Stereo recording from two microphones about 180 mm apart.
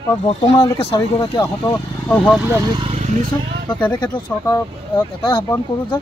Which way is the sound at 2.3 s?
10° right (ahead or behind).